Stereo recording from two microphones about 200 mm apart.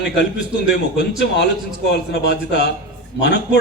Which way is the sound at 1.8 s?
55° left (ahead or behind).